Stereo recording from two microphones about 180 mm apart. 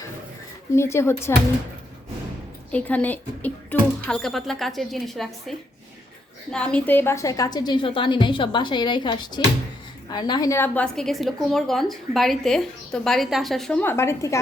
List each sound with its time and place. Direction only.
0.7 s a woman's voice: 15° left (ahead or behind)
2.7 s a woman's voice: 10° left (ahead or behind)